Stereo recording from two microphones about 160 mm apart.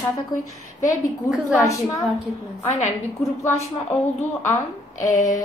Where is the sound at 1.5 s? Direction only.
20° left (ahead or behind).